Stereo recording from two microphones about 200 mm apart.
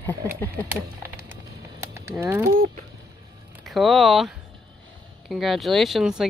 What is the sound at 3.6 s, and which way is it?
Speech, centre (ahead or behind).